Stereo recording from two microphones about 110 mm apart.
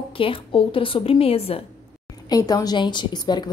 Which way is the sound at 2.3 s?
35° left (ahead or behind).